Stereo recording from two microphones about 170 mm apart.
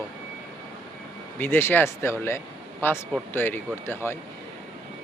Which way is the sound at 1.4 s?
15° left (ahead or behind).